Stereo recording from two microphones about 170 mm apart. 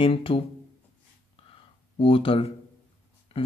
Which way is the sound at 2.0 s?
30° left (ahead or behind).